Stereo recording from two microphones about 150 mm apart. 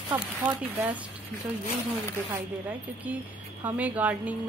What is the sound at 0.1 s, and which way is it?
Speech, 10° right (ahead or behind).